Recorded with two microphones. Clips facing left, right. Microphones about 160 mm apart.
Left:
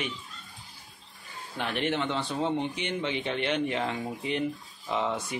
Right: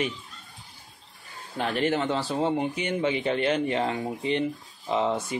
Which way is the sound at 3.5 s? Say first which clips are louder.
Right 4 dB; 35° right (ahead or behind).